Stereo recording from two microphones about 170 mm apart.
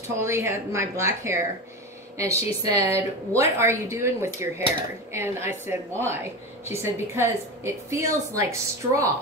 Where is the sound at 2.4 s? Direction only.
35° left (ahead or behind).